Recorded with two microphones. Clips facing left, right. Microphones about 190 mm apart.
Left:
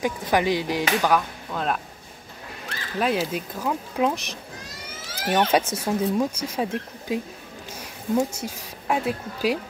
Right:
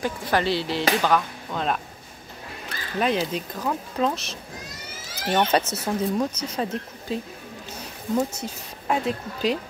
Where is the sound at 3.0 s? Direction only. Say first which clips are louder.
Even; 5° left (ahead or behind).